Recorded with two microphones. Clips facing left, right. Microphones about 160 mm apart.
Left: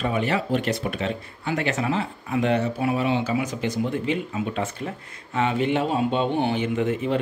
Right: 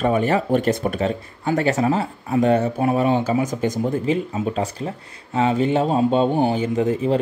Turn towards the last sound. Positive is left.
turn(degrees=-35)  # may be behind; listen again after turning